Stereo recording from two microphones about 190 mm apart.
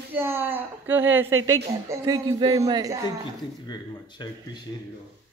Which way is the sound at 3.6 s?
20° left (ahead or behind).